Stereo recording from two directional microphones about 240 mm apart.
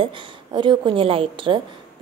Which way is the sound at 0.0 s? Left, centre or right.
Centre.